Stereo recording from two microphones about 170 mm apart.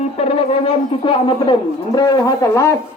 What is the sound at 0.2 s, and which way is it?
A man's voice, 35° left (ahead or behind).